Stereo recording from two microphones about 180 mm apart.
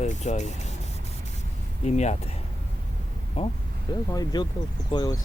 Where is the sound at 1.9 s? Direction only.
40° left (ahead or behind).